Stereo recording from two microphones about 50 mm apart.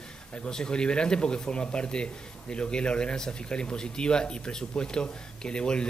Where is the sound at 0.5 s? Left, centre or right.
Centre.